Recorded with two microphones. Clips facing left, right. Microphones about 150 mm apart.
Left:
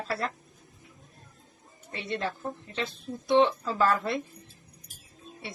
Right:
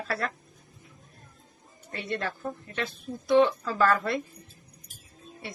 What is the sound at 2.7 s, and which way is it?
Speech, 25° left (ahead or behind).